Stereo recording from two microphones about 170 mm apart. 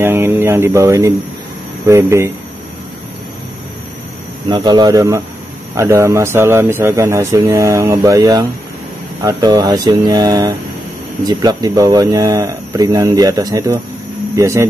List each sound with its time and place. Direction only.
0.0 s a man's voice: 15° right (ahead or behind)
4.5 s a man's voice: 25° right (ahead or behind)